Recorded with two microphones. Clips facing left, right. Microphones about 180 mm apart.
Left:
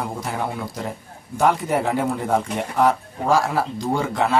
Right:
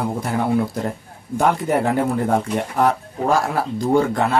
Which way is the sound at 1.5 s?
Centre (ahead or behind).